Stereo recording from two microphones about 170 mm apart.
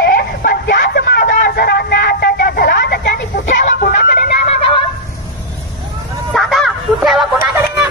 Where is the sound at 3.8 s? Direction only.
55° left (ahead or behind).